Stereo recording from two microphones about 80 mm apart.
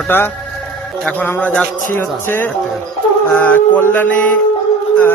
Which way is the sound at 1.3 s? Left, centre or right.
Centre.